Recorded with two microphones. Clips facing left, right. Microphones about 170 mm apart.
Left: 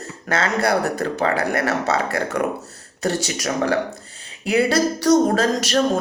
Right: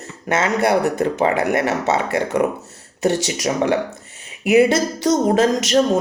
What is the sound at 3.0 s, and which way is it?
Speech, 20° right (ahead or behind).